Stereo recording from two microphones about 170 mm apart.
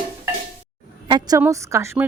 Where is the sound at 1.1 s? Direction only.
25° right (ahead or behind).